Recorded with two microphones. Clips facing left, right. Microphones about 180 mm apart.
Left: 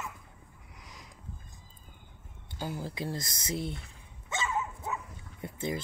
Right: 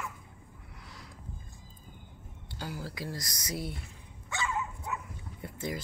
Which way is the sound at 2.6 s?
20° left (ahead or behind).